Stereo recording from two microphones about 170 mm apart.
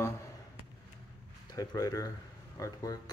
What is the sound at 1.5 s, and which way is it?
Speech, 20° left (ahead or behind).